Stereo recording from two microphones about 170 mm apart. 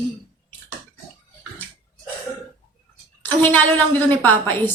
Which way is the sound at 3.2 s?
10° left (ahead or behind).